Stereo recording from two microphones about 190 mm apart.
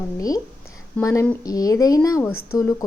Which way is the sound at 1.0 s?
5° left (ahead or behind).